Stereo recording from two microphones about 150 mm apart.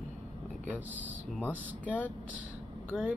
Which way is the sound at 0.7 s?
10° right (ahead or behind).